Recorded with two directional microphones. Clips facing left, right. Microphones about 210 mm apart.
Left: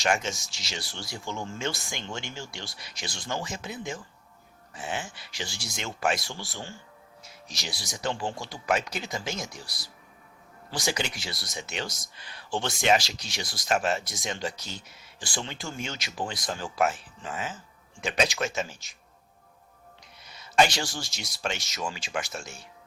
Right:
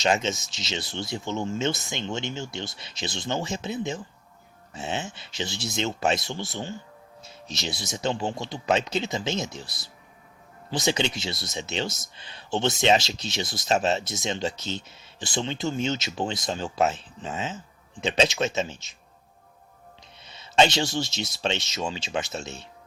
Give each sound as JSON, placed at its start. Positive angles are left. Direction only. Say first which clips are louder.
{"t": 0.0, "sound": "speech", "louder": "right 3 dB", "side_deg": -20}
{"t": 20.2, "sound": "speech", "louder": "right 2 dB", "side_deg": -25}